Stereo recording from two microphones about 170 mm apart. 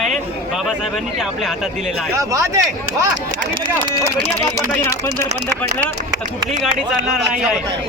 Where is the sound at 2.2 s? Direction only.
20° right (ahead or behind).